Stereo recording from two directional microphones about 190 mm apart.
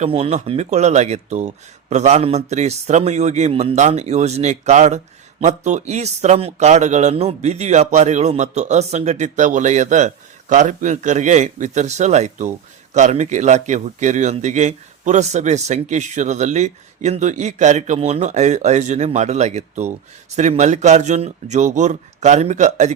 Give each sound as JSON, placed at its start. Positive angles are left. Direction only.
{"t": 0.0, "sound": "speech", "side_deg": -30}